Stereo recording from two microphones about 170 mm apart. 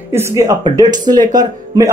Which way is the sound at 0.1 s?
15° right (ahead or behind).